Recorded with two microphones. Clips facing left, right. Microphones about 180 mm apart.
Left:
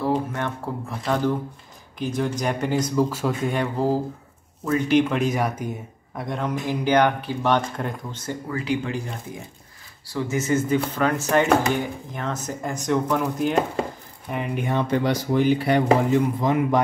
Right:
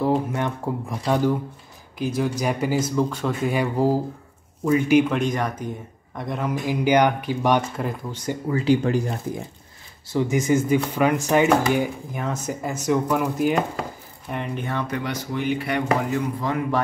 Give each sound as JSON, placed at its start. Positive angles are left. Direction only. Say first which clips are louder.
{"t": 0.0, "sound": "speech", "louder": "right 2 dB", "side_deg": -15}
{"t": 8.2, "sound": "speech", "louder": "right 6 dB", "side_deg": -15}
{"t": 10.0, "sound": "speech", "louder": "right 3 dB", "side_deg": -20}
{"t": 14.3, "sound": "speech", "louder": "left 3 dB", "side_deg": 10}
{"t": 14.9, "sound": "speech", "louder": "left 6 dB", "side_deg": 30}